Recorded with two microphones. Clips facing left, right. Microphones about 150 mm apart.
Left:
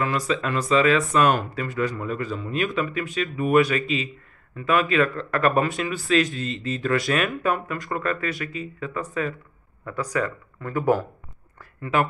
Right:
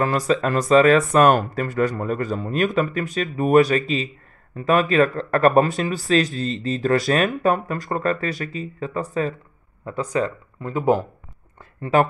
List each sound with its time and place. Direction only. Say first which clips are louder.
0.3 s speech: right 7 dB; 45° right (ahead or behind); by 11.1 s 20° right (ahead or behind)
11.8 s speech: right 5 dB; 40° right (ahead or behind)